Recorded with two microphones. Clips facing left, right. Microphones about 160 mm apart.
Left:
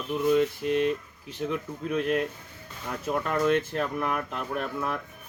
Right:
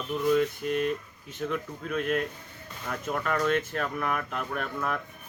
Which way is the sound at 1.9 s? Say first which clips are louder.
Left 2 dB; 30° left (ahead or behind).